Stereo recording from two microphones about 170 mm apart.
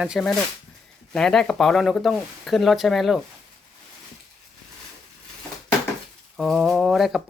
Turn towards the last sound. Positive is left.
turn(degrees=0)  # may be behind; listen again after turning